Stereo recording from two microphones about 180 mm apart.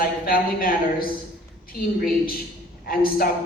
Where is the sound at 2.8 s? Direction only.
55° left (ahead or behind).